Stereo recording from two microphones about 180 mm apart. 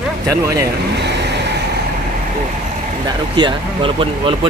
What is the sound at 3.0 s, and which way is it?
Speech, 25° right (ahead or behind).